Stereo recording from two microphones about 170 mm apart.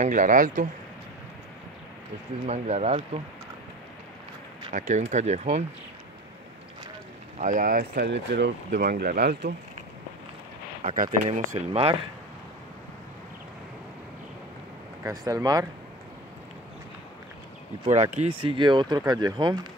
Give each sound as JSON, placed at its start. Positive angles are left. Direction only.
{"t": 0.0, "sound": "speech", "side_deg": -50}
{"t": 2.4, "sound": "speech", "side_deg": -40}
{"t": 4.7, "sound": "speech", "side_deg": -45}
{"t": 7.3, "sound": "speech", "side_deg": -50}
{"t": 11.0, "sound": "speech", "side_deg": -45}
{"t": 15.0, "sound": "speech", "side_deg": -20}
{"t": 17.8, "sound": "speech", "side_deg": -40}
{"t": 18.5, "sound": "speech", "side_deg": -30}